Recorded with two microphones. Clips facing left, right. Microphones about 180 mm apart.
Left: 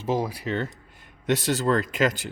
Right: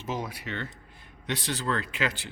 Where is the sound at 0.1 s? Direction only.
35° left (ahead or behind).